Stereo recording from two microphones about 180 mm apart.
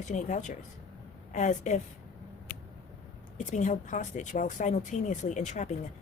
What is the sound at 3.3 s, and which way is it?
Speech, 40° left (ahead or behind).